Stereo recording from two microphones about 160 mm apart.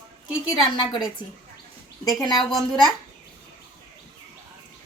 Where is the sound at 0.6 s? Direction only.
Centre (ahead or behind).